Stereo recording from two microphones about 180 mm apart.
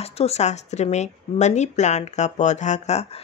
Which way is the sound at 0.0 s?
35° left (ahead or behind).